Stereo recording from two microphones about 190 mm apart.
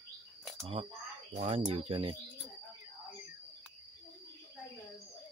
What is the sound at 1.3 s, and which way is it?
Speech, 35° right (ahead or behind).